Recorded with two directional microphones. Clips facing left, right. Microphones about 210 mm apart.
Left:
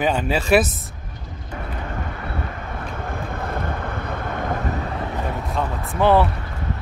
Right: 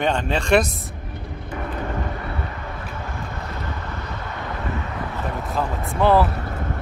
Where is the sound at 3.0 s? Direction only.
55° left (ahead or behind).